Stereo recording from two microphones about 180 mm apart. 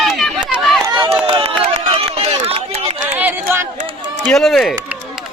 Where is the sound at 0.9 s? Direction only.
20° right (ahead or behind).